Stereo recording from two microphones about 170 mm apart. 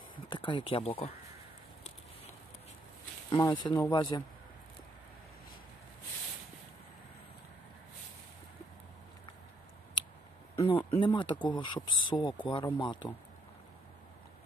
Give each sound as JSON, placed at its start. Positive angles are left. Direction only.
{"t": 0.3, "sound": "speech", "side_deg": 30}
{"t": 3.3, "sound": "speech", "side_deg": 25}
{"t": 10.6, "sound": "a sound", "side_deg": 35}
{"t": 11.1, "sound": "speech", "side_deg": 30}